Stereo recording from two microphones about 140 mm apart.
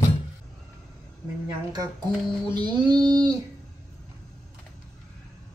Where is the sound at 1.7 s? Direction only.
30° right (ahead or behind).